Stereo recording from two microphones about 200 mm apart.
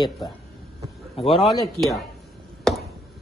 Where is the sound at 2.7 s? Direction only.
5° left (ahead or behind).